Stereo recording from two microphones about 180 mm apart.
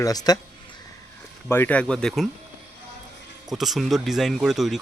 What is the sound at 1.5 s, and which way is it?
Speech, 10° left (ahead or behind).